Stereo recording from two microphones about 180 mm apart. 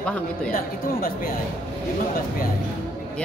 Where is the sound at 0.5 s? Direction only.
50° left (ahead or behind).